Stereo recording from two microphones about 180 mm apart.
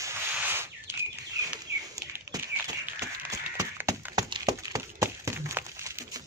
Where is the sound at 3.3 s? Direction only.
15° right (ahead or behind).